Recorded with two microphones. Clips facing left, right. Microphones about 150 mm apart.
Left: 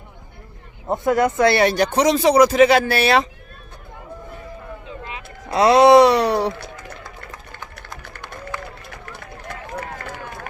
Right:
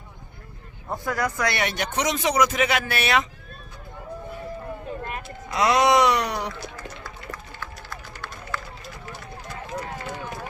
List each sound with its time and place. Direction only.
0.9 s speech: 25° left (ahead or behind)
4.9 s vehicle: 50° right (ahead or behind)
5.5 s speech: 30° left (ahead or behind)
6.7 s a sound: 20° left (ahead or behind)
8.5 s run: 15° left (ahead or behind)